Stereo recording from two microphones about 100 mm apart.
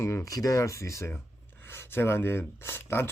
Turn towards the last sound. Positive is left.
turn(degrees=25)  # may be behind; listen again after turning